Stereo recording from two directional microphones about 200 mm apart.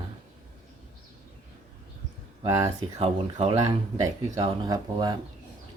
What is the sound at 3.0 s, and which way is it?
Speech, 30° right (ahead or behind).